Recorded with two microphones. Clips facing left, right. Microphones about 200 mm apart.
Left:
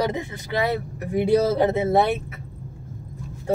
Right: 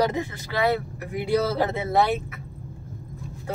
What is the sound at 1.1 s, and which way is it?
Speech, 25° left (ahead or behind).